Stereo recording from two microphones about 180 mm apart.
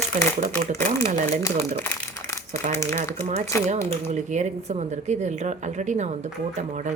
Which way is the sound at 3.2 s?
40° right (ahead or behind).